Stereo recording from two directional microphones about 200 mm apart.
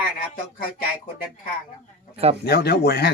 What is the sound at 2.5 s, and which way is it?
Speech, 50° left (ahead or behind).